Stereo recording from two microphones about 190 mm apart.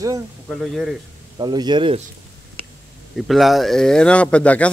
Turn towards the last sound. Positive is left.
turn(degrees=5)  # may be behind; listen again after turning